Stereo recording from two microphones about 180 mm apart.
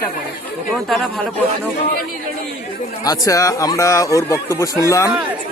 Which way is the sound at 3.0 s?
20° left (ahead or behind).